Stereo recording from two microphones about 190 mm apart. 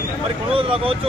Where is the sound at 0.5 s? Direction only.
30° right (ahead or behind).